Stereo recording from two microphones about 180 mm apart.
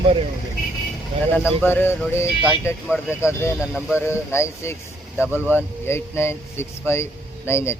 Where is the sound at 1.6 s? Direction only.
10° left (ahead or behind).